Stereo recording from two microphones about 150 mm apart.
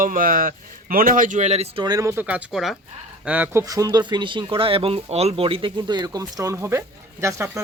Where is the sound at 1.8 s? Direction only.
20° right (ahead or behind).